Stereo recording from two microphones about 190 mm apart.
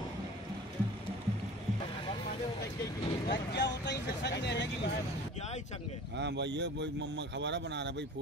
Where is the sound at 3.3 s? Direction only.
65° left (ahead or behind).